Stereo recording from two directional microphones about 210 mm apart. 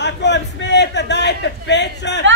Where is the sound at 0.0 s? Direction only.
55° left (ahead or behind).